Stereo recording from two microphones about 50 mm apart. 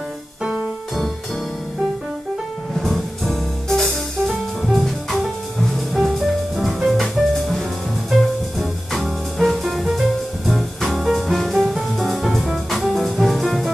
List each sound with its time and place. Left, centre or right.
0.4 s music: centre
2.7 s music: centre